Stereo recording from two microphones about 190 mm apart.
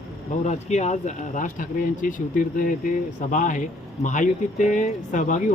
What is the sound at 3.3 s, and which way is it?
Speech, 40° left (ahead or behind).